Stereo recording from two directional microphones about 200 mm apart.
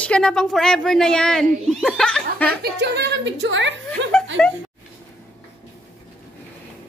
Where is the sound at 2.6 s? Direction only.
55° right (ahead or behind).